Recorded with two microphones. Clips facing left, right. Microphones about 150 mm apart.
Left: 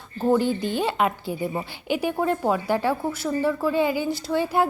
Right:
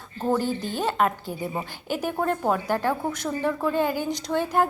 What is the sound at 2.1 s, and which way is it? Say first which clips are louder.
A woman's voice: right 1 dB; 5° left (ahead or behind).